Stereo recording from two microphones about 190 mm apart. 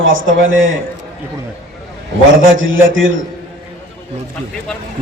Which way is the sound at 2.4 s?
90° right.